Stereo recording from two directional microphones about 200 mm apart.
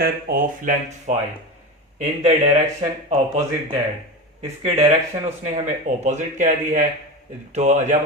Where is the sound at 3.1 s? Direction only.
30° right (ahead or behind).